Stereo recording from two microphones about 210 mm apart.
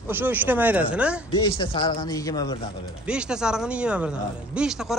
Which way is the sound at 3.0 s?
5° right (ahead or behind).